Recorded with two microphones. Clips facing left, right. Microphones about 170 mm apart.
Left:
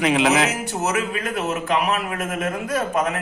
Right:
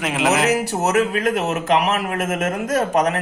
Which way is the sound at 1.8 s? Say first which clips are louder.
Right 3 dB; 45° right (ahead or behind).